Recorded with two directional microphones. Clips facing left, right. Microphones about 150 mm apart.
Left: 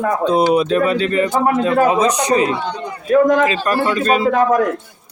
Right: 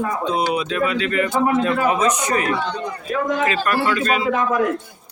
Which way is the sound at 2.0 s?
20° left (ahead or behind).